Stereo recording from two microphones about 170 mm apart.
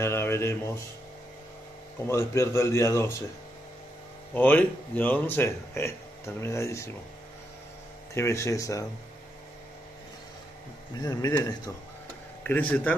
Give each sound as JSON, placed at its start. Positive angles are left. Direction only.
{"t": 0.0, "sound": "speech", "side_deg": 15}
{"t": 2.0, "sound": "speech", "side_deg": 15}
{"t": 4.3, "sound": "speech", "side_deg": 10}
{"t": 8.1, "sound": "speech", "side_deg": 15}
{"t": 11.0, "sound": "speech", "side_deg": 20}
{"t": 12.4, "sound": "speech", "side_deg": 10}